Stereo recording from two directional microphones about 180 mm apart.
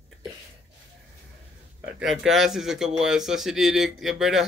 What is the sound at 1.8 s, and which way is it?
Speech, 5° right (ahead or behind).